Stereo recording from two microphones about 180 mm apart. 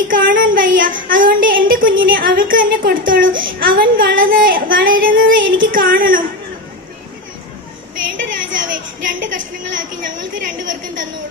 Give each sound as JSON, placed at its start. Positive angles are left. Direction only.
{"t": 0.1, "sound": "a woman's voice", "side_deg": -50}
{"t": 3.6, "sound": "child singing", "side_deg": -55}
{"t": 8.1, "sound": "a sound", "side_deg": -50}
{"t": 9.2, "sound": "a woman's voice", "side_deg": -45}